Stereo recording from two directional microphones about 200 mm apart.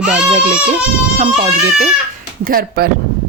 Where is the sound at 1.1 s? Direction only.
30° right (ahead or behind).